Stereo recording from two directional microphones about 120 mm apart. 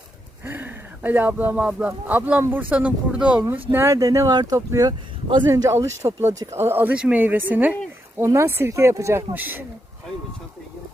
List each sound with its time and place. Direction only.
0.4 s speech: 15° right (ahead or behind)
3.4 s speech: 20° right (ahead or behind)